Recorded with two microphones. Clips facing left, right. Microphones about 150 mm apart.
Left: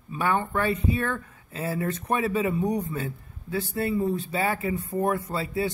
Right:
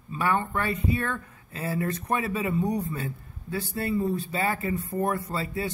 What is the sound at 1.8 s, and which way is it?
Speech, 25° left (ahead or behind).